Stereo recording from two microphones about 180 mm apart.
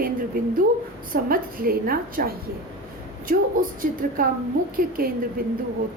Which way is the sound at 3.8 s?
50° right (ahead or behind).